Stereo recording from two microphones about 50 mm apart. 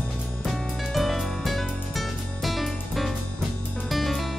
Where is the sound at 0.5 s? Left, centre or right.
Centre.